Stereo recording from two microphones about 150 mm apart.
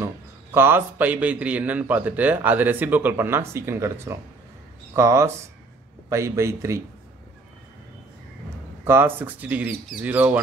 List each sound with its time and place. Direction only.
0.6 s a man's voice: 15° right (ahead or behind)
8.8 s a man's voice: 15° right (ahead or behind)